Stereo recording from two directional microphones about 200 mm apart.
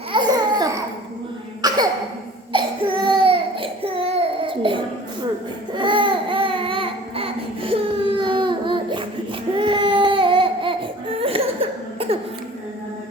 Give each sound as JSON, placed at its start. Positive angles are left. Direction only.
{"t": 0.1, "sound": "babbling", "side_deg": -20}
{"t": 1.6, "sound": "cough", "side_deg": -20}
{"t": 2.5, "sound": "baby cry", "side_deg": -25}